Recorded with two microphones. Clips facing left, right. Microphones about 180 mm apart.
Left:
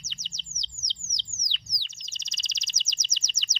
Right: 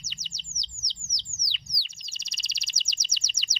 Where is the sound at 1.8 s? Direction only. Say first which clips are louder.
Right 1 dB; 10° right (ahead or behind).